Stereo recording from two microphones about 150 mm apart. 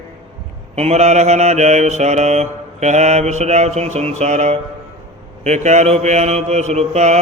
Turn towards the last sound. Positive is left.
turn(degrees=-50)  # may be behind; listen again after turning